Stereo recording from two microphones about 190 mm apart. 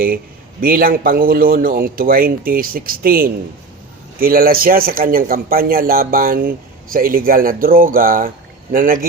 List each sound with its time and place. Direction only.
0.6 s speech: 50° right (ahead or behind)